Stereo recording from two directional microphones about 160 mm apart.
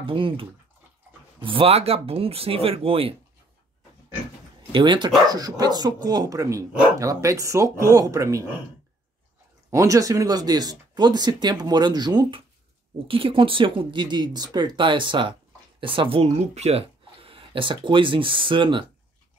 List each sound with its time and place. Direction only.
0.0 s speech: 35° right (ahead or behind)
4.7 s speech: 30° right (ahead or behind)
9.7 s speech: 20° right (ahead or behind)